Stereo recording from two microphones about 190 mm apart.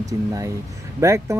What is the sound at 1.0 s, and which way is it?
Speech, 15° right (ahead or behind).